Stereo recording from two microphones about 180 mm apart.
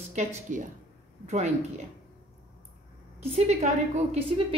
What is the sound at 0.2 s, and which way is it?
A woman's voice, 40° right (ahead or behind).